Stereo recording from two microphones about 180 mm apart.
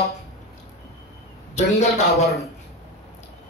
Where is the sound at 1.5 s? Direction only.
40° left (ahead or behind).